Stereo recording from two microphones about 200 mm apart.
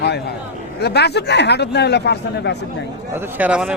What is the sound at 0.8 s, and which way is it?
Speech, 55° left (ahead or behind).